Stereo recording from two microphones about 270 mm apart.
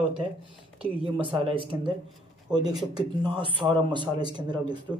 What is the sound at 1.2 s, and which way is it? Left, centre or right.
Speech, centre.